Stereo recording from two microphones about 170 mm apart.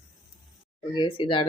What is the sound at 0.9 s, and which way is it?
Speech, 25° left (ahead or behind).